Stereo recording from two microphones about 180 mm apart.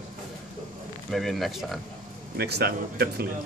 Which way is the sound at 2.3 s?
65° right (ahead or behind).